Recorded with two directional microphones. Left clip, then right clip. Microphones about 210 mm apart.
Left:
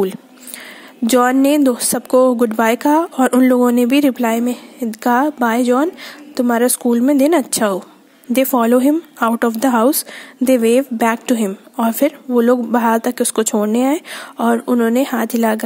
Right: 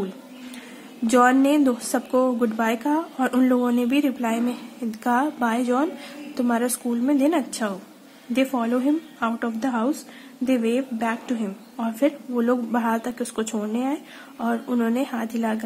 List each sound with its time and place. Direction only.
1.0 s a woman's voice: 40° left (ahead or behind)